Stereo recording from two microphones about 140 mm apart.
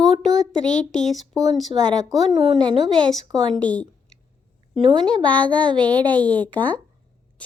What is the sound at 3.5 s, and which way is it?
Speech, 10° left (ahead or behind).